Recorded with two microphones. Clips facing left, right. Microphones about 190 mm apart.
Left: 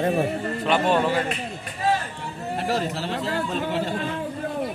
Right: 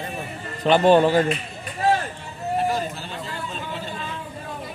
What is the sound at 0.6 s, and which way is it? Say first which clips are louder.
Speech: right 6 dB; 30° right (ahead or behind).